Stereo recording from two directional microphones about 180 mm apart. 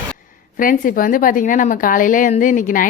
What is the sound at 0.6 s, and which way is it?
A woman's voice, 50° left (ahead or behind).